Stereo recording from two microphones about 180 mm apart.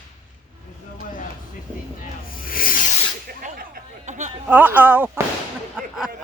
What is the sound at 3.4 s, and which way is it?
Chatter, 50° right (ahead or behind).